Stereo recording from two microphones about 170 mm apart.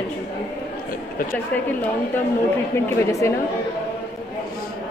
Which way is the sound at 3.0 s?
15° left (ahead or behind).